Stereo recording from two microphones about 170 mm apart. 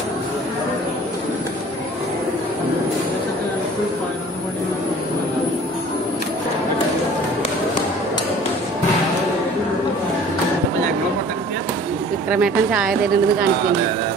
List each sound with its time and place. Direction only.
12.3 s speech: 5° right (ahead or behind)